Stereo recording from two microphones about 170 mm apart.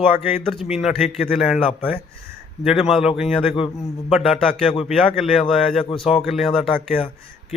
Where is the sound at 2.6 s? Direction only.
Centre (ahead or behind).